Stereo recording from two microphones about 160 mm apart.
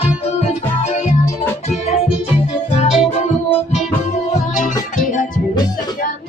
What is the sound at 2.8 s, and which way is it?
Music, 45° left (ahead or behind).